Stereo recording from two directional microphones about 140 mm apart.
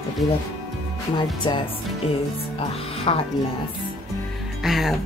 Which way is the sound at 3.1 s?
40° left (ahead or behind).